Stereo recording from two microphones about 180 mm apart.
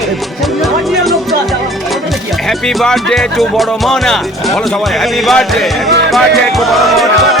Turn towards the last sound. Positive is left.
turn(degrees=0)  # may be behind; listen again after turning